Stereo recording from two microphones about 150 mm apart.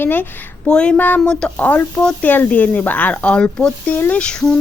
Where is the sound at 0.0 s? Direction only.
15° left (ahead or behind).